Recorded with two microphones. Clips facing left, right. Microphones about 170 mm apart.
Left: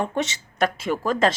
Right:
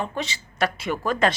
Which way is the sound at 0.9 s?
20° left (ahead or behind).